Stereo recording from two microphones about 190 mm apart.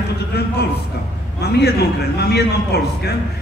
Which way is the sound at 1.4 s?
60° left (ahead or behind).